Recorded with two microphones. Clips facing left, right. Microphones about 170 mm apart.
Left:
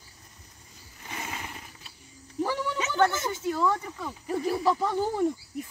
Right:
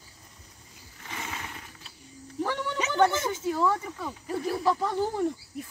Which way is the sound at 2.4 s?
5° left (ahead or behind).